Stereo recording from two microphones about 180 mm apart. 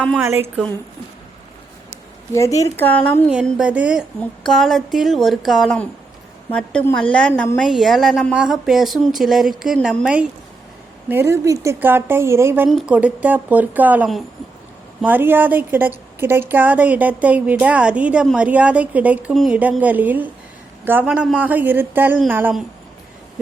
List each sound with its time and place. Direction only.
0.2 s a woman's voice: 15° right (ahead or behind)
2.3 s a woman's voice: 15° left (ahead or behind)
3.6 s a woman's voice: 5° right (ahead or behind)
11.1 s a woman's voice: 15° right (ahead or behind)
12.6 s a woman's voice: centre (ahead or behind)